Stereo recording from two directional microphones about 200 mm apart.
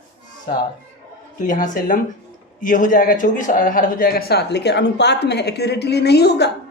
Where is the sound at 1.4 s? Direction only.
40° left (ahead or behind).